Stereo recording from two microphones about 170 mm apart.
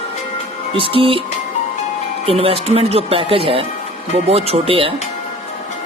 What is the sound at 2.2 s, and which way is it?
Speech, 35° right (ahead or behind).